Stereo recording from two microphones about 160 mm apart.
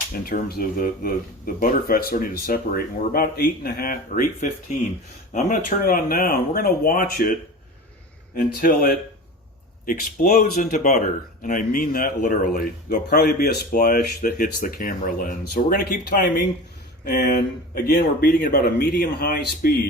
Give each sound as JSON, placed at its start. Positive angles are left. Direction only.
{"t": 0.3, "sound": "speech", "side_deg": 70}
{"t": 8.5, "sound": "speech", "side_deg": 65}
{"t": 17.7, "sound": "speech", "side_deg": 75}